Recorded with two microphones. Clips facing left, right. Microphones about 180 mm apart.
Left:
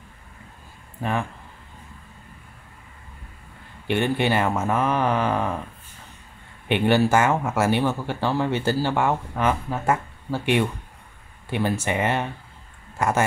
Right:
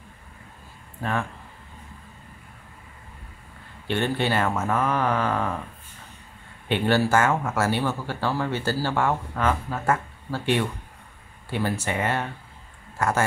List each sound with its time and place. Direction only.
3.8 s speech: 15° left (ahead or behind)
6.7 s speech: 15° left (ahead or behind)